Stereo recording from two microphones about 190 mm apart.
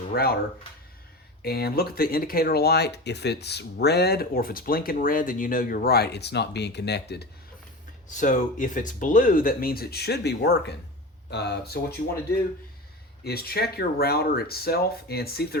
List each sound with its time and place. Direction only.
0.1 s speech: 55° left (ahead or behind)
1.4 s speech: 55° left (ahead or behind)
8.1 s speech: 40° left (ahead or behind); by 11.9 s 55° left (ahead or behind)
13.2 s speech: 55° left (ahead or behind)